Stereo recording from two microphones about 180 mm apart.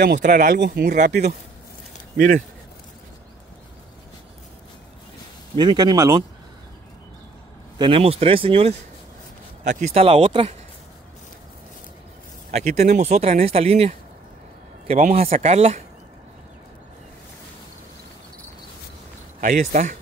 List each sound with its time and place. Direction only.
0.2 s speech: 45° right (ahead or behind)
0.6 s speech: 60° right (ahead or behind)
0.9 s speech: 40° right (ahead or behind)
5.6 s speech: 25° right (ahead or behind)
7.8 s speech: 30° right (ahead or behind)
12.4 s speech: 40° right (ahead or behind)
19.4 s speech: 45° right (ahead or behind)